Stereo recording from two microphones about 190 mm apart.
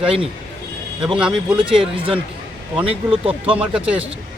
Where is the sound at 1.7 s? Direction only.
30° right (ahead or behind).